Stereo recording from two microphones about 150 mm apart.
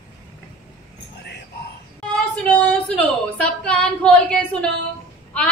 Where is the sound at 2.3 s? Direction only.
5° left (ahead or behind).